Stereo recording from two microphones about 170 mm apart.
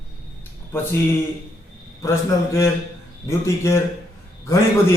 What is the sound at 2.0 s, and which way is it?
A man's voice, 15° left (ahead or behind).